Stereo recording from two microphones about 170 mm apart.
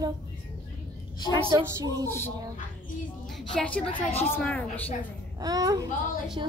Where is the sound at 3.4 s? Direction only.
5° left (ahead or behind).